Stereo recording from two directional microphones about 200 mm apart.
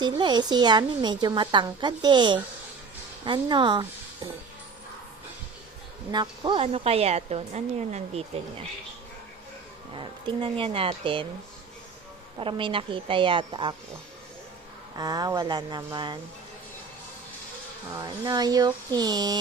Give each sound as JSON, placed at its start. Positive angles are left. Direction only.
{"t": 0.1, "sound": "a woman's voice", "side_deg": -20}
{"t": 6.1, "sound": "a woman's voice", "side_deg": -25}
{"t": 9.9, "sound": "a woman's voice", "side_deg": -25}
{"t": 12.4, "sound": "a woman's voice", "side_deg": -25}
{"t": 14.9, "sound": "a woman's voice", "side_deg": -20}
{"t": 17.9, "sound": "a woman's voice", "side_deg": -20}